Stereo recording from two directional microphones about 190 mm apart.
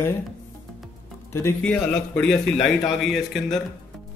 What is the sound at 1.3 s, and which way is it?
A man's voice, 15° left (ahead or behind).